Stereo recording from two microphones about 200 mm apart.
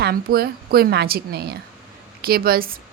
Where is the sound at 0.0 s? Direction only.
50° right (ahead or behind).